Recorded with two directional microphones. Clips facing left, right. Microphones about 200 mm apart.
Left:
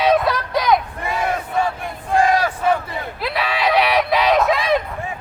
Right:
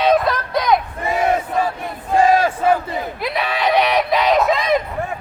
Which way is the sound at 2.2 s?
25° right (ahead or behind).